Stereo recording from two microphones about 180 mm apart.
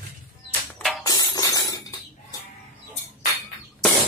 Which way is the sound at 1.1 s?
20° left (ahead or behind).